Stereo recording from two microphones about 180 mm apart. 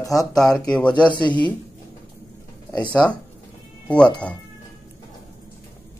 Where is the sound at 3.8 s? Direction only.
5° left (ahead or behind).